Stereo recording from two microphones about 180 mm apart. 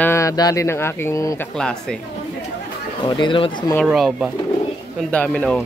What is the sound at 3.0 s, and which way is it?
Speech, 25° left (ahead or behind).